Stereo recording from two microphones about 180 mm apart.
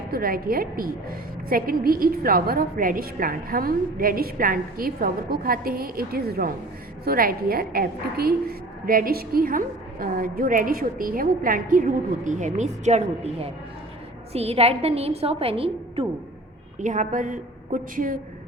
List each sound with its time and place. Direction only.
0.1 s a woman's voice: 55° right (ahead or behind); by 16.0 s 30° right (ahead or behind)
16.8 s a woman's voice: 45° right (ahead or behind)